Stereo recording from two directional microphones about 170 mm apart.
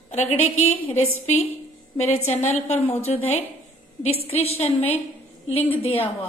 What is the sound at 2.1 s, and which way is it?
Speech, 40° left (ahead or behind).